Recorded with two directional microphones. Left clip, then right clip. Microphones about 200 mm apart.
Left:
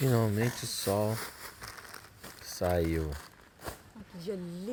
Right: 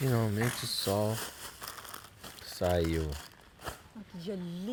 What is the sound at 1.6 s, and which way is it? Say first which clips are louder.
Crumpling: right 3 dB; 30° right (ahead or behind).